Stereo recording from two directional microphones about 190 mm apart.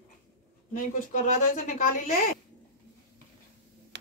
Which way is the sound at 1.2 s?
40° left (ahead or behind).